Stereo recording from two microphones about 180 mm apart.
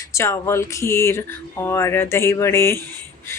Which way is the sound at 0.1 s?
15° left (ahead or behind).